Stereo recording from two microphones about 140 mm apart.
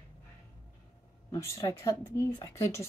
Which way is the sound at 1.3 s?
20° left (ahead or behind).